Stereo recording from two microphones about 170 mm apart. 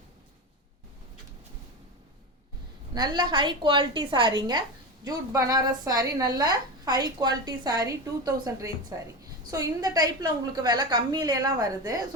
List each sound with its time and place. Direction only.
2.9 s speech: 25° right (ahead or behind)